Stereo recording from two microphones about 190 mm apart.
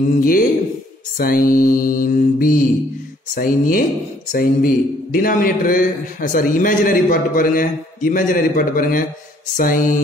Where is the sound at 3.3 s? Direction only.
45° left (ahead or behind).